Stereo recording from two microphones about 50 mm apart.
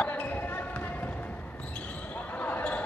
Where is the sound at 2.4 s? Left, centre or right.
Left.